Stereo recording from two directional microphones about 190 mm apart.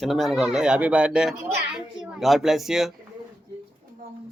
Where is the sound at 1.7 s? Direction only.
Centre (ahead or behind).